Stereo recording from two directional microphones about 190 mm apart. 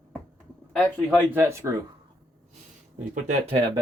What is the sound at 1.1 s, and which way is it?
Speech, 10° right (ahead or behind).